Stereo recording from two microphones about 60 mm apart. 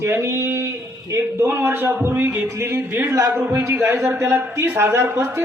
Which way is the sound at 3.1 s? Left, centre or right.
Right.